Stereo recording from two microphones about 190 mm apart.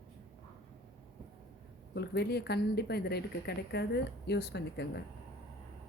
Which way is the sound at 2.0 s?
60° left (ahead or behind).